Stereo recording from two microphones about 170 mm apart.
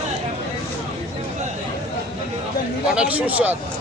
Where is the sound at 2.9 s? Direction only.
5° right (ahead or behind).